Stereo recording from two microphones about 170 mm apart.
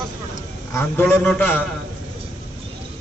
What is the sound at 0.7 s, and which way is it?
Speech, 15° left (ahead or behind).